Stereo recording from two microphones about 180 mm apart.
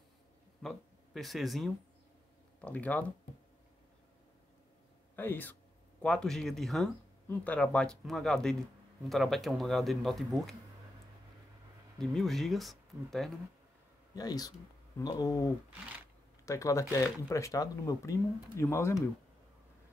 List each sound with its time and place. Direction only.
0.6 s speech: centre (ahead or behind)
5.1 s speech: 10° left (ahead or behind)
12.0 s speech: centre (ahead or behind)
14.1 s speech: 20° left (ahead or behind)